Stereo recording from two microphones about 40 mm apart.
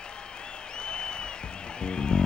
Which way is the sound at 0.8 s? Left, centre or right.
Left.